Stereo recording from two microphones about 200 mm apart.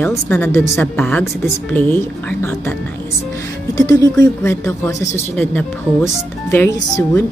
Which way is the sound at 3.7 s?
15° left (ahead or behind).